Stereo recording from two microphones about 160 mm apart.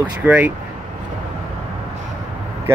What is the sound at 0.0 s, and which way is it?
Speech, 10° right (ahead or behind).